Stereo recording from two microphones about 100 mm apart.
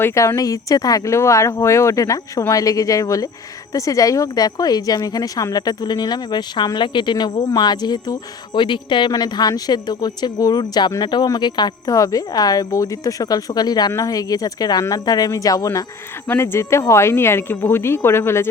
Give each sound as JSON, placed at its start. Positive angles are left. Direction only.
{"t": 0.0, "sound": "speech", "side_deg": 30}
{"t": 16.3, "sound": "speech", "side_deg": 25}